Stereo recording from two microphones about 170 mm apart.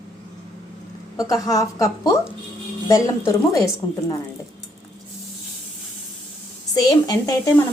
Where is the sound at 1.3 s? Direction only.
20° left (ahead or behind).